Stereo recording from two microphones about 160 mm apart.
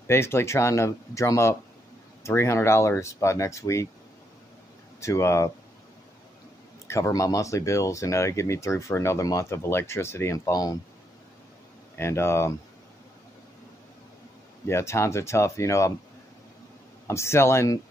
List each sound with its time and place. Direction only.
0.0 s speech: 15° left (ahead or behind)
5.0 s speech: 15° left (ahead or behind)
6.9 s speech: 20° left (ahead or behind)
12.0 s speech: 15° left (ahead or behind)
14.7 s speech: 15° left (ahead or behind)
17.1 s speech: 15° left (ahead or behind)